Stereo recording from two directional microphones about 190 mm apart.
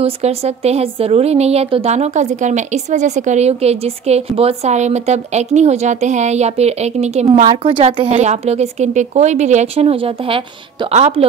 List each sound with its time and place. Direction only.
0.0 s a woman's voice: 35° right (ahead or behind)